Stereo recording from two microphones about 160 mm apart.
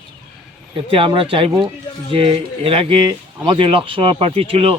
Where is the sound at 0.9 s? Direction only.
35° right (ahead or behind).